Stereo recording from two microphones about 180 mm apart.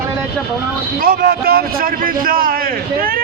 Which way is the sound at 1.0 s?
55° right (ahead or behind).